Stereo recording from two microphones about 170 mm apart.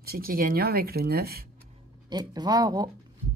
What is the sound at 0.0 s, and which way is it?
Speech, 60° right (ahead or behind).